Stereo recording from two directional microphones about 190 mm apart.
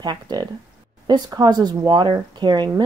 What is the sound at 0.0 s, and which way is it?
Speech, 20° right (ahead or behind).